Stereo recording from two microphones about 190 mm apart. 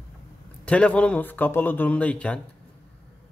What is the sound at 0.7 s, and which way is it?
Speech, 5° left (ahead or behind).